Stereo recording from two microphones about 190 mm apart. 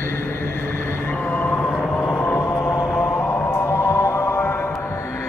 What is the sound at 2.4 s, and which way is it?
Music, 15° left (ahead or behind).